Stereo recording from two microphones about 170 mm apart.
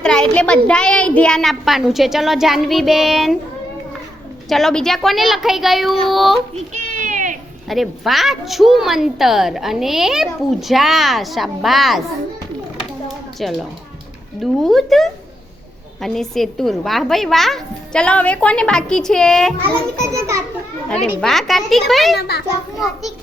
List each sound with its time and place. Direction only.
0.0 s a woman's voice: 5° left (ahead or behind)
4.4 s a woman's voice: centre (ahead or behind)
6.5 s a sound: 45° right (ahead or behind)
7.7 s a woman's voice: centre (ahead or behind)
13.4 s a woman's voice: centre (ahead or behind)
20.1 s a child's voice: 20° right (ahead or behind)
20.9 s a woman's voice: 5° left (ahead or behind)
22.2 s a child's voice: 70° left (ahead or behind)